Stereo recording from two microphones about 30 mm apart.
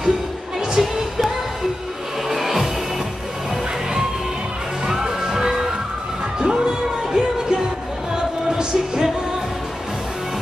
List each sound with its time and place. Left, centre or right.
0.8 s music: centre
2.2 s music: centre
4.8 s music: right